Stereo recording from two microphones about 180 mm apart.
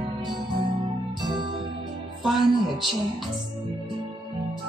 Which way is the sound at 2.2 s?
Centre (ahead or behind).